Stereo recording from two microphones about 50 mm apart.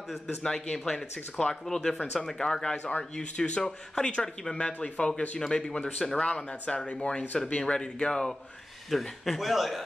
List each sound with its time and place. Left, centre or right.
0.4 s speech: centre
1.4 s speech: centre
8.9 s a man's voice: centre